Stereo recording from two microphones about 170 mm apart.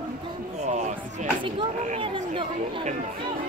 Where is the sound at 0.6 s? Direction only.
40° right (ahead or behind).